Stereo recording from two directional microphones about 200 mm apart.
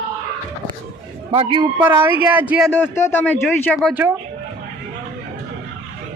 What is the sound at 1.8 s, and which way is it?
Speech, 10° right (ahead or behind).